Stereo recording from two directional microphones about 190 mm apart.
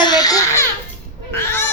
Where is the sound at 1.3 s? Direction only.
10° left (ahead or behind).